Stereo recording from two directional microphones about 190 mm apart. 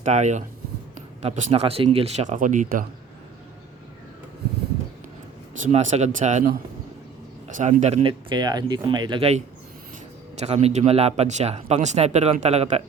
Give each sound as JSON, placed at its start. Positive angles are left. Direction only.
{"t": 0.0, "sound": "speech", "side_deg": -40}
{"t": 5.6, "sound": "speech", "side_deg": -40}